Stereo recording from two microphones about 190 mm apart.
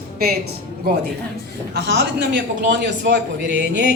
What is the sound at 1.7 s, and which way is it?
A man's voice, 65° right (ahead or behind).